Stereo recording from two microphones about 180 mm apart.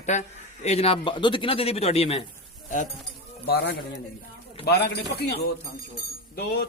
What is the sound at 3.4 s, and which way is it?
A man's voice, 65° left (ahead or behind).